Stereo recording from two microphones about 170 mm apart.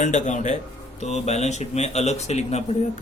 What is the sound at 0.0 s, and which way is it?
A man's voice, 45° left (ahead or behind).